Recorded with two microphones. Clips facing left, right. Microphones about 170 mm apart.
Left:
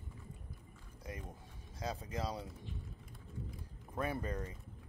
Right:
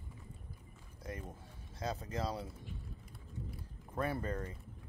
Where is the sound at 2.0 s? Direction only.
10° left (ahead or behind).